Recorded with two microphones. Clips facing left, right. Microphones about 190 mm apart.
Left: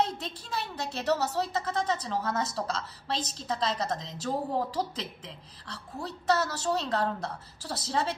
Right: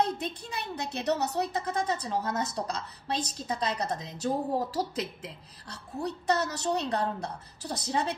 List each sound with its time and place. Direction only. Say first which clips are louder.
0.0 s a woman's voice: right 1 dB; 15° right (ahead or behind)